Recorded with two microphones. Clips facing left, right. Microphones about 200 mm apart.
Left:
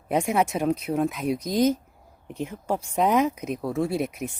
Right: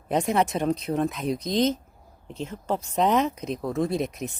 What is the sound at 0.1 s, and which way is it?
Speech, 10° left (ahead or behind).